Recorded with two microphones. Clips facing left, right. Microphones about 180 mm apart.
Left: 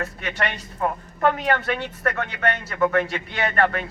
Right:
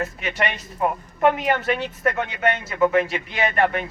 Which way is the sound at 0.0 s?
15° right (ahead or behind).